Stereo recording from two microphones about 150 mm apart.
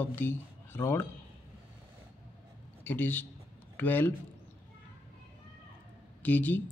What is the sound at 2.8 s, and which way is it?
Speech, 15° left (ahead or behind).